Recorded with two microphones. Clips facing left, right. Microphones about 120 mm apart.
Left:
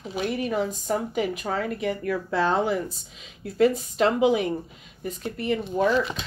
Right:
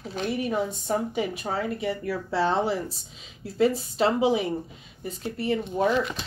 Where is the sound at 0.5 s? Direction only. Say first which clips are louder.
Left 1 dB; 25° right (ahead or behind).